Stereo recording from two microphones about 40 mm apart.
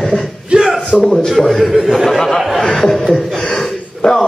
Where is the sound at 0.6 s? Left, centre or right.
Centre.